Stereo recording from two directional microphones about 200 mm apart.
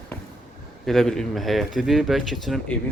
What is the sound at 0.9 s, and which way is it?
Speech, centre (ahead or behind).